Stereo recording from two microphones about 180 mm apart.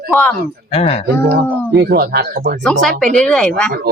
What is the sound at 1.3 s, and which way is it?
Speech, 65° right (ahead or behind).